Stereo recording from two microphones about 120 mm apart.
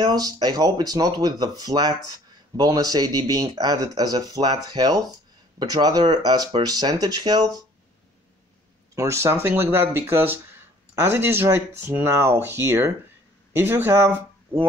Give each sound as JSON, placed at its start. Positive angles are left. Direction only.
{"t": 0.0, "sound": "speech", "side_deg": -35}
{"t": 8.9, "sound": "speech", "side_deg": -25}